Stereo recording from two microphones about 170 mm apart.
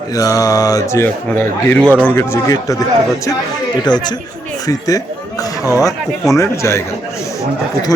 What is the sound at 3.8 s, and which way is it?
Speech, 25° left (ahead or behind).